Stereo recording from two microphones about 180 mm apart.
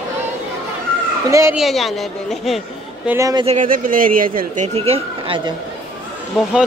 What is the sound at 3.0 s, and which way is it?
Speech, 15° right (ahead or behind).